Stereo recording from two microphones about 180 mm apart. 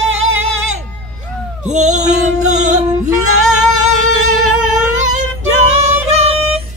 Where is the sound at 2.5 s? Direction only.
40° right (ahead or behind).